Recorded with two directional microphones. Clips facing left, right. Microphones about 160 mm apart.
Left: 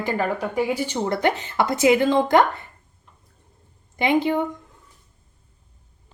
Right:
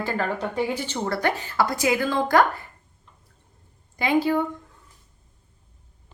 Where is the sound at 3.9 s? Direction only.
20° left (ahead or behind).